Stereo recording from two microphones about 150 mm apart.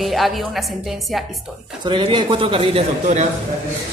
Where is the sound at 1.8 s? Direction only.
30° right (ahead or behind).